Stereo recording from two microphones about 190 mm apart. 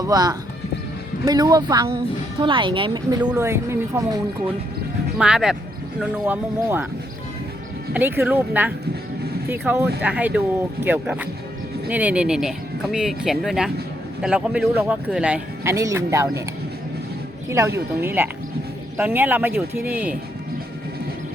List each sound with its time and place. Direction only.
0.0 s speech: 20° right (ahead or behind)
7.9 s speech: 10° right (ahead or behind)
18.0 s speech: 10° right (ahead or behind)